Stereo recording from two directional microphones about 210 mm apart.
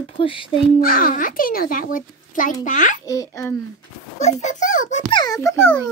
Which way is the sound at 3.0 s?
15° left (ahead or behind).